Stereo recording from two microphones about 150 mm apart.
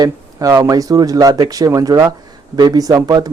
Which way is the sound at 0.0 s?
20° right (ahead or behind).